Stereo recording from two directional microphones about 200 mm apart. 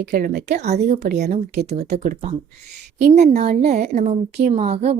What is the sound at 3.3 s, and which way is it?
A woman's voice, 35° right (ahead or behind).